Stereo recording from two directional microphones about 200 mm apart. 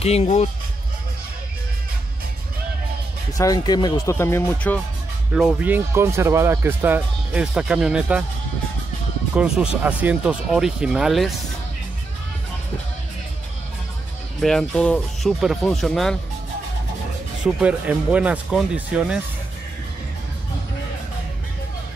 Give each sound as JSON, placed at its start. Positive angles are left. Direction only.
{"t": 0.0, "sound": "speech", "side_deg": 30}
{"t": 3.3, "sound": "speech", "side_deg": 15}
{"t": 5.3, "sound": "speech", "side_deg": -5}
{"t": 9.3, "sound": "speech", "side_deg": -5}
{"t": 14.4, "sound": "speech", "side_deg": 5}
{"t": 17.4, "sound": "speech", "side_deg": -5}